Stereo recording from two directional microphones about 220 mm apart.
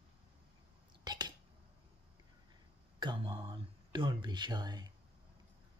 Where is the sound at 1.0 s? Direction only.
20° right (ahead or behind).